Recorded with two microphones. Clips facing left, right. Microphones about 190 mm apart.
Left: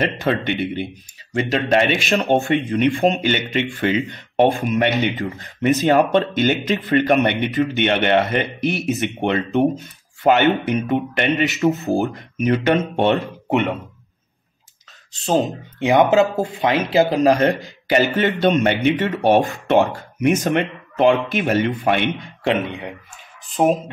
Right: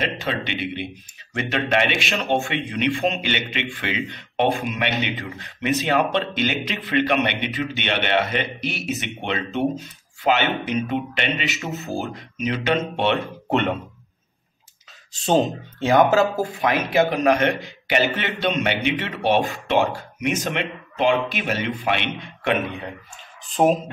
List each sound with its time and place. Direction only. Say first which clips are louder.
0.0 s speech: left 6 dB; 55° left (ahead or behind)
1.3 s speech: left 4 dB; 35° left (ahead or behind)
15.1 s speech: even; centre (ahead or behind)
15.8 s speech: left 2 dB; 20° left (ahead or behind)
16.9 s speech: left 3 dB; 30° left (ahead or behind)
20.5 s speech: left 6 dB; 55° left (ahead or behind)
22.4 s speech: left 2 dB; 25° left (ahead or behind)
23.5 s speech: left 1 dB; centre (ahead or behind)